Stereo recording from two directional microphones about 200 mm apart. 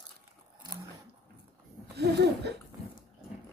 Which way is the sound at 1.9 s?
55° right (ahead or behind).